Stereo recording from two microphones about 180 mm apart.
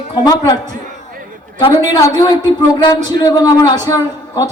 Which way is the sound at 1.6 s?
25° left (ahead or behind).